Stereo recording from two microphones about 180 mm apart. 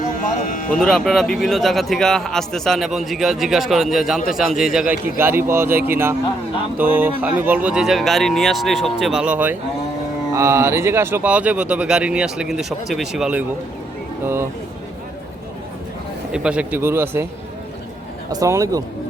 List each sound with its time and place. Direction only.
0.3 s speech: 50° left (ahead or behind)
0.7 s a man's voice: 5° left (ahead or behind)
16.3 s speech: 5° right (ahead or behind)
18.3 s speech: 20° right (ahead or behind)